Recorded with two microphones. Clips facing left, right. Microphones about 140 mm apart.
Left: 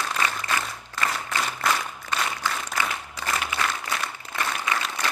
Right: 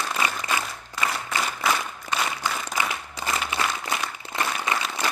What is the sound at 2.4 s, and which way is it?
Applause, 15° right (ahead or behind).